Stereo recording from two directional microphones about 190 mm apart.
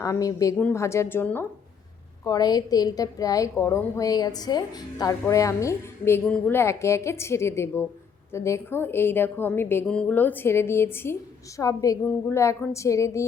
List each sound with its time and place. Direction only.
0.0 s a woman's voice: 15° left (ahead or behind)